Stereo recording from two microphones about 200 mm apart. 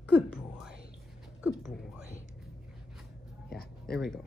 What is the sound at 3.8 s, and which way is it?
Speech, centre (ahead or behind).